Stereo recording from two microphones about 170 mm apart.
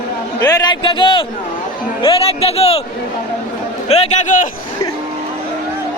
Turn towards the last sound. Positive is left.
turn(degrees=40)  # may be behind; listen again after turning